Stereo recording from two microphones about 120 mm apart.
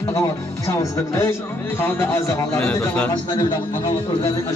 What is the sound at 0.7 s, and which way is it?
A man's voice, 25° left (ahead or behind).